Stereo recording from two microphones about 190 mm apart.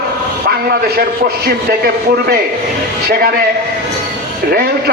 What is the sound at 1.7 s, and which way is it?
Speech, 55° right (ahead or behind).